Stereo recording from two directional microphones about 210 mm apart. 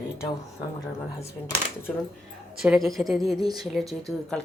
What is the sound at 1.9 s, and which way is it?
Speech, centre (ahead or behind).